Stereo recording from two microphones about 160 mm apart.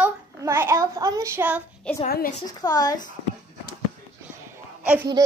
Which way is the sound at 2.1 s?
65° left (ahead or behind).